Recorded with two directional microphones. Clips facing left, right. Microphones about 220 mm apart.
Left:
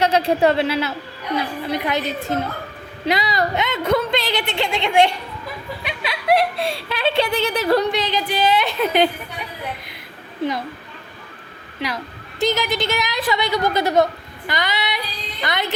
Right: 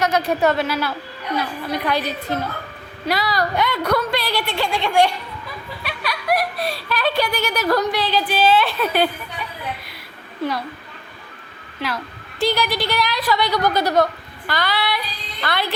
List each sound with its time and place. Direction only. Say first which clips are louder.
0.0 s a woman's voice: left 2 dB; 30° left (ahead or behind)
12.5 s a woman's voice: even; 20° left (ahead or behind)